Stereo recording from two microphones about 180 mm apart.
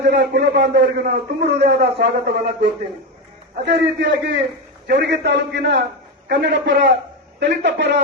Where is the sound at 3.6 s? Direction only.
70° right (ahead or behind).